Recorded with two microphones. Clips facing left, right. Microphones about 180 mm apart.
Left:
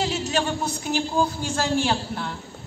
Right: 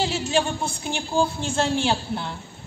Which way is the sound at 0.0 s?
30° right (ahead or behind).